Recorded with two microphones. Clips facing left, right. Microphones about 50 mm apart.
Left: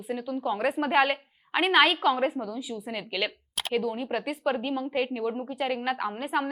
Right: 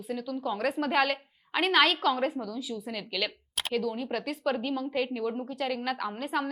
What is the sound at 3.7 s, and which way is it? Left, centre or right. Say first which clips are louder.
A woman's voice: left 2 dB; centre.